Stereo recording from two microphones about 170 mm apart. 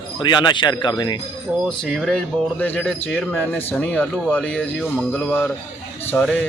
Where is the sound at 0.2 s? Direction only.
25° left (ahead or behind).